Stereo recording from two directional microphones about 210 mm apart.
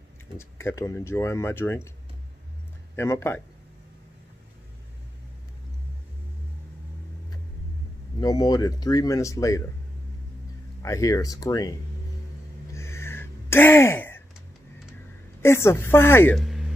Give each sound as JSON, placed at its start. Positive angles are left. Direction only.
{"t": 0.4, "sound": "speech", "side_deg": 15}
{"t": 3.0, "sound": "speech", "side_deg": 10}
{"t": 8.2, "sound": "speech", "side_deg": 20}
{"t": 10.8, "sound": "speech", "side_deg": 15}
{"t": 12.7, "sound": "a sound", "side_deg": 10}
{"t": 15.4, "sound": "speech", "side_deg": 10}
{"t": 16.3, "sound": "music", "side_deg": 0}